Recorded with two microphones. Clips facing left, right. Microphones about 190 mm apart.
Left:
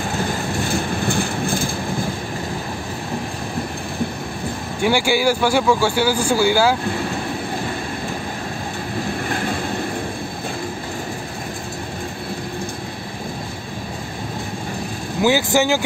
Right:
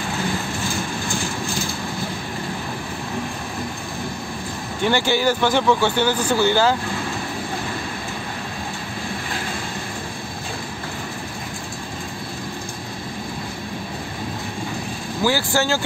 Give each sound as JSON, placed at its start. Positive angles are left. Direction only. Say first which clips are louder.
{"t": 1.0, "sound": "train", "louder": "left 5 dB", "side_deg": 55}
{"t": 4.8, "sound": "speech", "louder": "left 2 dB", "side_deg": 10}
{"t": 15.2, "sound": "speech", "louder": "left 4 dB", "side_deg": 20}